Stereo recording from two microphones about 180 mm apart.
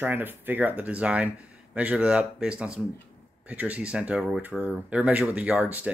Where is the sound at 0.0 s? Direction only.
10° right (ahead or behind).